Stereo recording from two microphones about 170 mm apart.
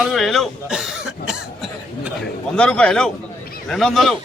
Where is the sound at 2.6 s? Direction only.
5° left (ahead or behind).